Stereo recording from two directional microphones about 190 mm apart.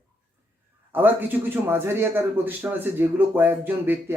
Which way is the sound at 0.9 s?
10° right (ahead or behind).